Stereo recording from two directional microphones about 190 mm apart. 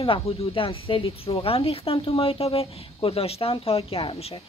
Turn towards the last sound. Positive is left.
turn(degrees=30)  # may be behind; listen again after turning